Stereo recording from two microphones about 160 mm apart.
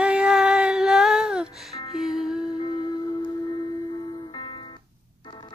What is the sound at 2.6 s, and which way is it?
Music, 30° left (ahead or behind).